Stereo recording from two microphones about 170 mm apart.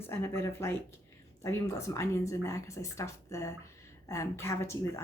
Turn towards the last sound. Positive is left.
turn(degrees=15)  # may be behind; listen again after turning